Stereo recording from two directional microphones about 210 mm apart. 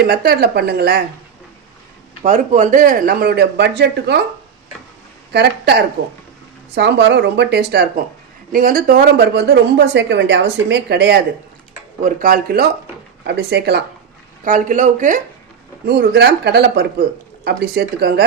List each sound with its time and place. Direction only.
0.0 s speech: 50° right (ahead or behind)
2.2 s speech: 35° right (ahead or behind)
5.3 s speech: 50° right (ahead or behind)
12.0 s speech: 40° right (ahead or behind)
14.4 s speech: 40° right (ahead or behind)
15.9 s speech: 50° right (ahead or behind)